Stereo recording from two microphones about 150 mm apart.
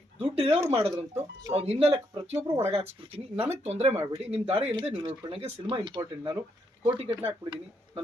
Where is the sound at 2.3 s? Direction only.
20° right (ahead or behind).